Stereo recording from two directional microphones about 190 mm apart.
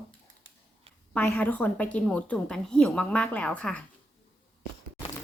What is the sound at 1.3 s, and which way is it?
A woman's voice, 10° left (ahead or behind).